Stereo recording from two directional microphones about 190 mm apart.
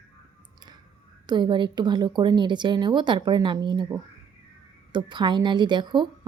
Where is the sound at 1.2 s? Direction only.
25° right (ahead or behind).